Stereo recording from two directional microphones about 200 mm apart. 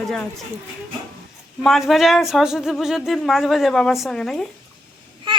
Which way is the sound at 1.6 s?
Centre (ahead or behind).